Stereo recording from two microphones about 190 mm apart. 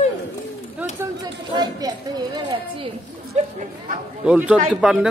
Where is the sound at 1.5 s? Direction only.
20° right (ahead or behind).